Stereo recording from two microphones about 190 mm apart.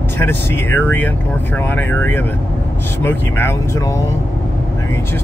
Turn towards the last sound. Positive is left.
turn(degrees=15)  # may be behind; listen again after turning